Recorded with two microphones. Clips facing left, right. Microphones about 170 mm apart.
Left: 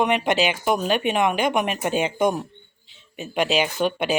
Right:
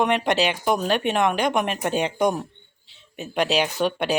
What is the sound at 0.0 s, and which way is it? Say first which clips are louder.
Speech: even; centre (ahead or behind).